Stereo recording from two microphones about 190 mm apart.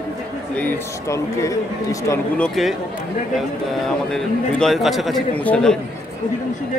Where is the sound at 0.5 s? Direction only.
10° left (ahead or behind).